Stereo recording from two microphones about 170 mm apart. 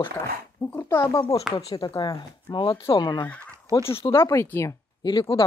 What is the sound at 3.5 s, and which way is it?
Fowl, 20° right (ahead or behind).